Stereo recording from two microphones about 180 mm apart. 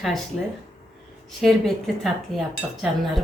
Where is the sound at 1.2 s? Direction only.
Centre (ahead or behind).